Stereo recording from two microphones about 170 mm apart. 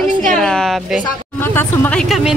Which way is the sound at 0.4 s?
5° left (ahead or behind).